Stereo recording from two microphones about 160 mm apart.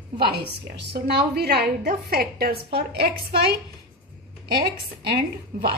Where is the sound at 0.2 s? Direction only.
90° right.